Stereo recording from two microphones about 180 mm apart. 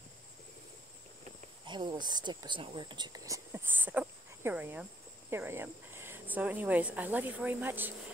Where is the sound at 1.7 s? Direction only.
25° right (ahead or behind).